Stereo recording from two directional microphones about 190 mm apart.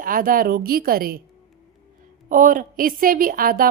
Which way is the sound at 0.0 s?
45° right (ahead or behind).